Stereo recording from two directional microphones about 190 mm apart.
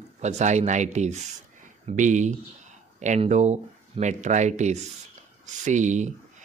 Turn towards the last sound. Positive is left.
turn(degrees=-40)  # may be behind; listen again after turning